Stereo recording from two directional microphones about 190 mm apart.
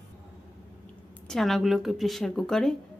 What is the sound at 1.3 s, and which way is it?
A woman's voice, centre (ahead or behind).